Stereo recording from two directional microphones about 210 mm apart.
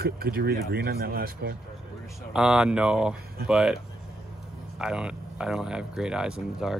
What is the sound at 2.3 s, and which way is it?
Speech, 5° right (ahead or behind).